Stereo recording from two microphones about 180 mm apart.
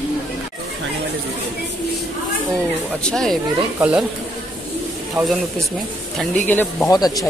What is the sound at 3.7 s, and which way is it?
Speech, 5° right (ahead or behind).